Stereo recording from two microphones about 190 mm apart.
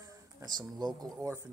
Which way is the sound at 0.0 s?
20° right (ahead or behind).